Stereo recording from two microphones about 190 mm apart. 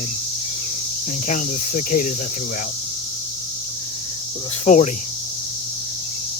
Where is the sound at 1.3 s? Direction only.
45° left (ahead or behind).